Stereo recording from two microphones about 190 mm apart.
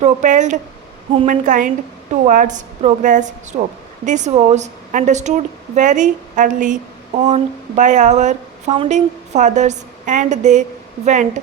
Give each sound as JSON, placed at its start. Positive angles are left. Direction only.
{"t": 0.0, "sound": "speech", "side_deg": -40}
{"t": 1.5, "sound": "a woman's voice", "side_deg": -45}